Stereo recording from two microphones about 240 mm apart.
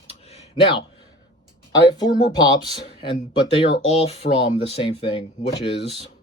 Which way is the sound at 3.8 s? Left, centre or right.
Left.